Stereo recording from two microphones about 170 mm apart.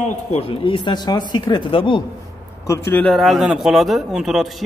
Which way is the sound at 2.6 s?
15° left (ahead or behind).